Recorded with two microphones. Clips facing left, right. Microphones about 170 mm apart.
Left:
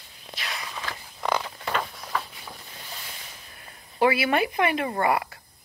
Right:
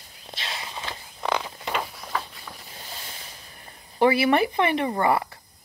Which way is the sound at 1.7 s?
5° right (ahead or behind).